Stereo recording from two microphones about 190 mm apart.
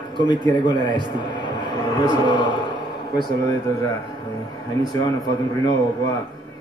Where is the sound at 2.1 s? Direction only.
25° left (ahead or behind).